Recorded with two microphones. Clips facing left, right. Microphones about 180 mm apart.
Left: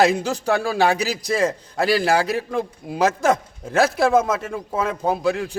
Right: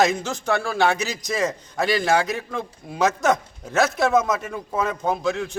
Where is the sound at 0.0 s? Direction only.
35° left (ahead or behind).